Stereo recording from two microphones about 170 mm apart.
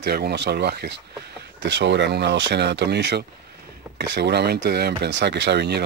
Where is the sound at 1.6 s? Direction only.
90° right.